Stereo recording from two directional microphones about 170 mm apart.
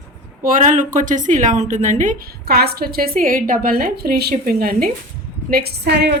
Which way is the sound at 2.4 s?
65° right (ahead or behind).